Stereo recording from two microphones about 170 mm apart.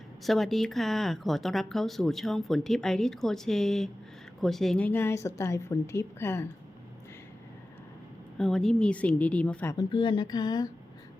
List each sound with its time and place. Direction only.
0.3 s a woman's voice: centre (ahead or behind)
8.4 s a woman's voice: 5° left (ahead or behind)
9.7 s speech: 25° left (ahead or behind)